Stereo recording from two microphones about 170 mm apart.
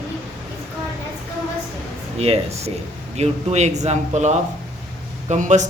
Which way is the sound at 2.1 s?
35° right (ahead or behind).